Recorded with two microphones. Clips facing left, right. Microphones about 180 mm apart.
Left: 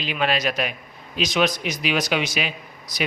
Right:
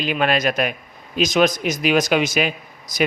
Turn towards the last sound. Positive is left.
turn(degrees=-45)  # may be behind; listen again after turning